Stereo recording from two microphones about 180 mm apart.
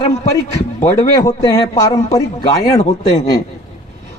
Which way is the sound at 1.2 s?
20° left (ahead or behind).